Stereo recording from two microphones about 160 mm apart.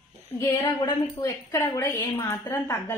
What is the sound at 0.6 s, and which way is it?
Speech, 25° left (ahead or behind).